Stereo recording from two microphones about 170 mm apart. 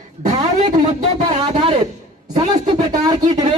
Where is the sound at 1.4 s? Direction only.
25° right (ahead or behind).